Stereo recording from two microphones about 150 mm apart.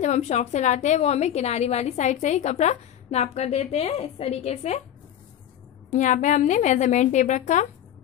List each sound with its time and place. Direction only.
0.0 s a woman's voice: 50° left (ahead or behind)
5.9 s a woman's voice: 55° left (ahead or behind)